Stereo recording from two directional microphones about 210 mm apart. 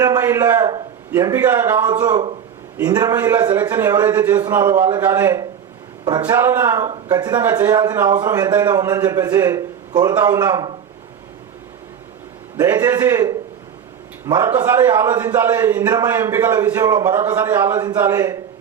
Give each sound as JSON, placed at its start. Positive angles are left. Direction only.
{"t": 0.0, "sound": "a man's voice", "side_deg": -15}
{"t": 12.5, "sound": "a man's voice", "side_deg": -15}